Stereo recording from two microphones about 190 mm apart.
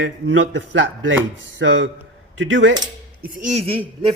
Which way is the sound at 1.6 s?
80° right.